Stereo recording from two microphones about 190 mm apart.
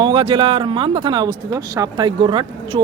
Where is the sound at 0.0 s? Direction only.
30° right (ahead or behind).